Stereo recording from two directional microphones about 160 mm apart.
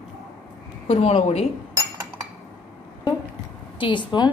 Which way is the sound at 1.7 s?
15° right (ahead or behind).